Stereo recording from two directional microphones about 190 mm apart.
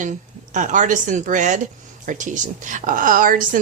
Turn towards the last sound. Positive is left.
turn(degrees=-45)  # may be behind; listen again after turning